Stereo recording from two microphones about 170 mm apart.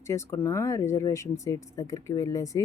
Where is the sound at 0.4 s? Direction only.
15° left (ahead or behind).